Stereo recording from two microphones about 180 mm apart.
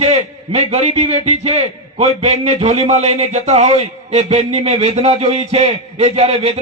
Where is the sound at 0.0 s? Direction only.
35° right (ahead or behind).